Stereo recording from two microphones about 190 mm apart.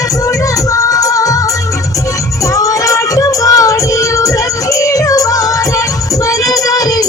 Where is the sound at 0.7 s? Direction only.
15° left (ahead or behind).